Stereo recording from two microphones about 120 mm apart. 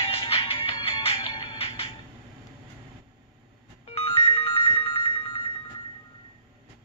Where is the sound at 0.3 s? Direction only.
45° left (ahead or behind).